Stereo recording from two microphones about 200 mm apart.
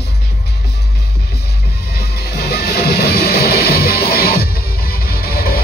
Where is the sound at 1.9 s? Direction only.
50° left (ahead or behind).